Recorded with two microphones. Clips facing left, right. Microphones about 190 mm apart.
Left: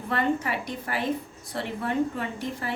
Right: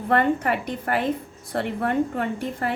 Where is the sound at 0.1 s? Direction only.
55° right (ahead or behind).